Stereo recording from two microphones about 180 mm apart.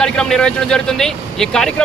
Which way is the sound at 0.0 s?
5° left (ahead or behind).